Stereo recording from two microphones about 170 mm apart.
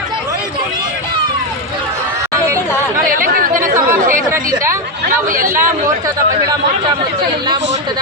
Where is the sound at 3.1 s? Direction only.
55° right (ahead or behind).